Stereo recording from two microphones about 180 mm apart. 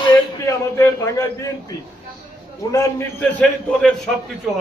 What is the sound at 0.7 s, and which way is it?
Speech, 15° left (ahead or behind).